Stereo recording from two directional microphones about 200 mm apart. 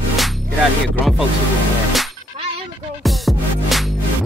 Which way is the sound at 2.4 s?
30° right (ahead or behind).